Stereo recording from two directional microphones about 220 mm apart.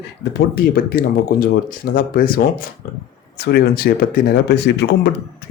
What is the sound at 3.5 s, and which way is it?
Speech, 45° left (ahead or behind).